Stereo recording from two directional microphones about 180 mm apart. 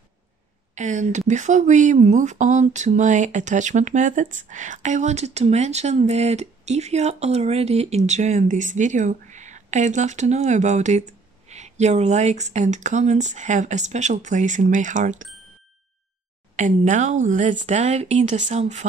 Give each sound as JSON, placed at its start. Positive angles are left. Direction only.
{"t": 0.7, "sound": "speech", "side_deg": -40}
{"t": 16.5, "sound": "speech", "side_deg": -45}